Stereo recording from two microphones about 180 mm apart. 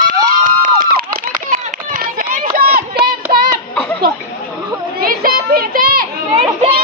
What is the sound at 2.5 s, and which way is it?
Child singing, 55° right (ahead or behind).